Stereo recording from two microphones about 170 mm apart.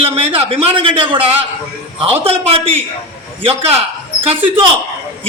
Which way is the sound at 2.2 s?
35° right (ahead or behind).